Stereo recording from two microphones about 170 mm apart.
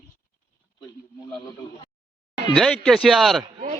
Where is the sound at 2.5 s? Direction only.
5° left (ahead or behind).